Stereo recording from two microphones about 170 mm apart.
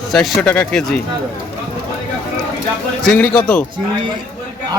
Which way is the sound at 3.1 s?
5° left (ahead or behind).